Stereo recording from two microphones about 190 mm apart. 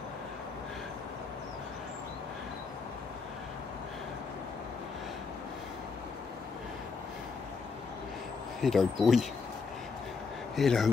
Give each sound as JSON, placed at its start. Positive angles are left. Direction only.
{"t": 8.5, "sound": "speech", "side_deg": 0}
{"t": 10.5, "sound": "speech", "side_deg": 0}